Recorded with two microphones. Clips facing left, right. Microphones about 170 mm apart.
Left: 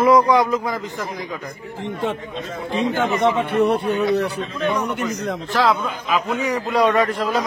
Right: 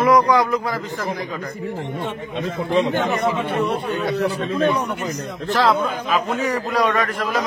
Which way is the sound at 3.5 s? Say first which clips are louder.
Left 4 dB; 65° left (ahead or behind).